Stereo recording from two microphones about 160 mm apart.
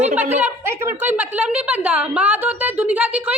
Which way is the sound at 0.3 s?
15° right (ahead or behind).